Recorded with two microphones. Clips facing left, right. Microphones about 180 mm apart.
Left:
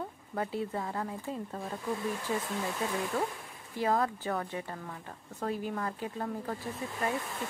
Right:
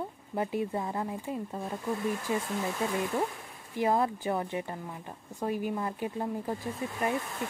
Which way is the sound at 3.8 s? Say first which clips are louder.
Right 2 dB; 15° right (ahead or behind).